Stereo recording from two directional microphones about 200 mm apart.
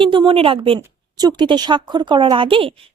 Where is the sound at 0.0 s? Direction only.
25° right (ahead or behind).